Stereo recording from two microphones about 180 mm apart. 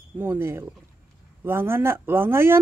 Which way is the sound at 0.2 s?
10° right (ahead or behind).